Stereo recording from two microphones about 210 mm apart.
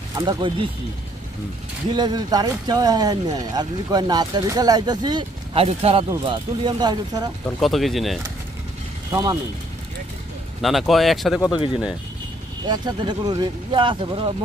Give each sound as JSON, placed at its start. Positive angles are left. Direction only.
{"t": 0.2, "sound": "speech", "side_deg": -20}
{"t": 1.9, "sound": "speech", "side_deg": -20}
{"t": 7.6, "sound": "speech", "side_deg": 0}
{"t": 9.1, "sound": "speech", "side_deg": -15}
{"t": 10.6, "sound": "speech", "side_deg": 0}
{"t": 11.5, "sound": "speech", "side_deg": 25}
{"t": 12.6, "sound": "speech", "side_deg": -20}